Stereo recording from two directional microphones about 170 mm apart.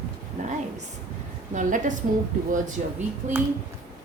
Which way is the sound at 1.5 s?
50° right (ahead or behind).